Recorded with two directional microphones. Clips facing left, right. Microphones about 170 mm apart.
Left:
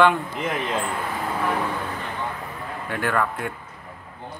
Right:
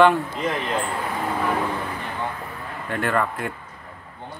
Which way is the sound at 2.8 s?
Centre (ahead or behind).